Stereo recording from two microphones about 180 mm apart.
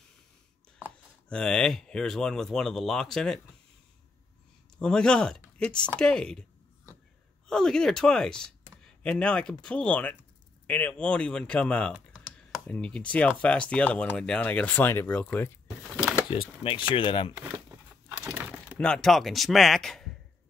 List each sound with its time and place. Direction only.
1.3 s speech: 5° left (ahead or behind)
4.7 s speech: 5° left (ahead or behind)
7.4 s speech: 5° left (ahead or behind)
16.3 s speech: 30° left (ahead or behind)
18.0 s a sound: 10° right (ahead or behind)
18.8 s speech: 5° left (ahead or behind)